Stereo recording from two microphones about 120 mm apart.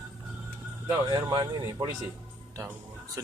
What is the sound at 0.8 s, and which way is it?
Speech, 30° right (ahead or behind).